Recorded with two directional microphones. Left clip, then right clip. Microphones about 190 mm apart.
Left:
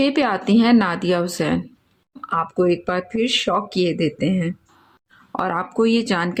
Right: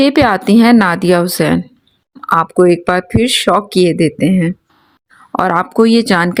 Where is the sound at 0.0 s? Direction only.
45° right (ahead or behind).